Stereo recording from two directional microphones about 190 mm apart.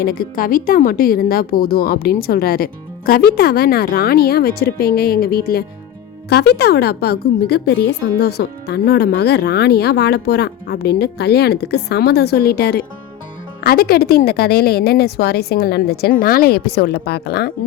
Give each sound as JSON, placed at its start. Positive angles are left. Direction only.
{"t": 0.0, "sound": "a woman's voice", "side_deg": 50}